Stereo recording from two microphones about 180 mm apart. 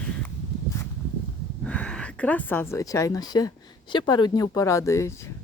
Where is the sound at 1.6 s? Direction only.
5° left (ahead or behind).